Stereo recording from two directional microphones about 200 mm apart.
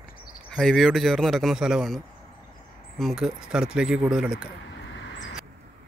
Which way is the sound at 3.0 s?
Centre (ahead or behind).